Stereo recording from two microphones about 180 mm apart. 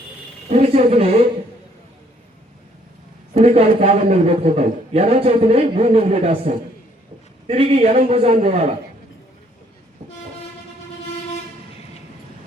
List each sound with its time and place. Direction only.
0.5 s speech: 35° right (ahead or behind)
3.3 s a man's voice: 35° right (ahead or behind)